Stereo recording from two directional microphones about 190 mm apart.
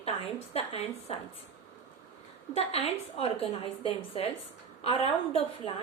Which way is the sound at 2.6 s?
30° left (ahead or behind).